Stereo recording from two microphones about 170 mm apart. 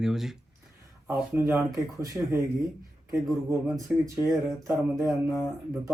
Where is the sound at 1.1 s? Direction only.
15° right (ahead or behind).